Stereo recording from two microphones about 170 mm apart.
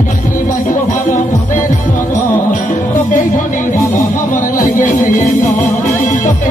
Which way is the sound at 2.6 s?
50° left (ahead or behind).